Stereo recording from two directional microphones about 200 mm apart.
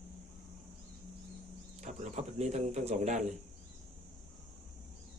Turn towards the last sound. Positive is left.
turn(degrees=-35)  # may be behind; listen again after turning